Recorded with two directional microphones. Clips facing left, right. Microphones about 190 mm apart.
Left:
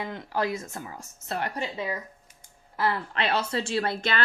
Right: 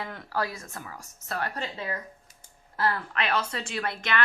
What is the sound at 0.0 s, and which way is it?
A woman's voice, 20° left (ahead or behind).